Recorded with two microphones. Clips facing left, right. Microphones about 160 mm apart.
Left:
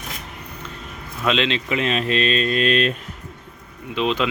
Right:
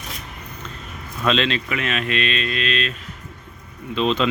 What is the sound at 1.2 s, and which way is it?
Speech, 15° left (ahead or behind).